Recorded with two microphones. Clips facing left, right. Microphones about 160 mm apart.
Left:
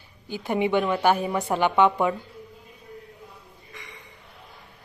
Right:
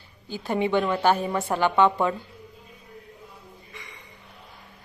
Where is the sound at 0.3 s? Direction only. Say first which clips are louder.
Left 1 dB; 15° left (ahead or behind).